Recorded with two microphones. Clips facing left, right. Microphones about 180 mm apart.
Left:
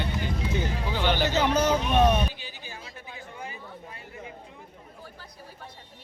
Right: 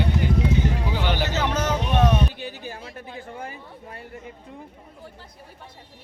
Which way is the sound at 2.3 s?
60° right (ahead or behind).